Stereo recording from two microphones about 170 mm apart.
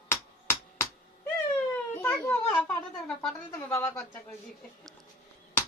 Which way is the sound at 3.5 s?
15° left (ahead or behind).